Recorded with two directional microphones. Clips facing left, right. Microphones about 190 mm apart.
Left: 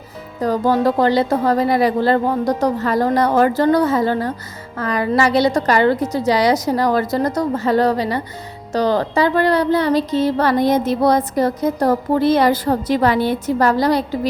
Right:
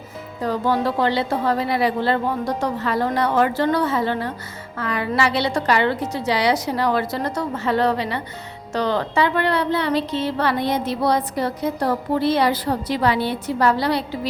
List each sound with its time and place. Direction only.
0.4 s a woman's voice: 40° left (ahead or behind)